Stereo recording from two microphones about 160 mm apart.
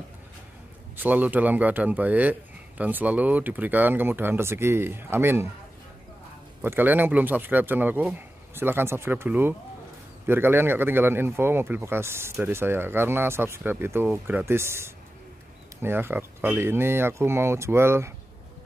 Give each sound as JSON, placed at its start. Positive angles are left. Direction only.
{"t": 0.9, "sound": "a man's voice", "side_deg": -10}
{"t": 6.6, "sound": "a man's voice", "side_deg": -10}